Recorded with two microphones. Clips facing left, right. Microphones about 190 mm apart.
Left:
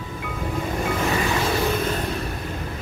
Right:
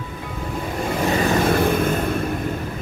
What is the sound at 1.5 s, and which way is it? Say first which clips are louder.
Vehicle: right 4 dB; 55° right (ahead or behind).